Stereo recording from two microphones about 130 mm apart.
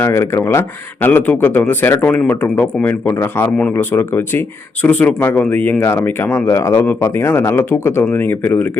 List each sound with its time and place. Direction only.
0.0 s speech: 20° left (ahead or behind)